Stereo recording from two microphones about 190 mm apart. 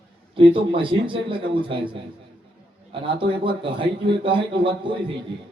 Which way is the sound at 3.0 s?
25° right (ahead or behind).